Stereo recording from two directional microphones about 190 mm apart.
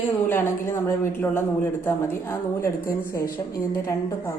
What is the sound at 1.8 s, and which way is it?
A woman's voice, 15° left (ahead or behind).